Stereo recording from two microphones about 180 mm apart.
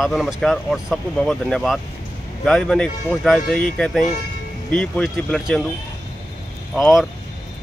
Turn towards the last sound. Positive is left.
turn(degrees=0)  # may be behind; listen again after turning